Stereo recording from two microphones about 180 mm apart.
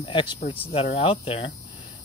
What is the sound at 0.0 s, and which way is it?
Speech, 25° left (ahead or behind).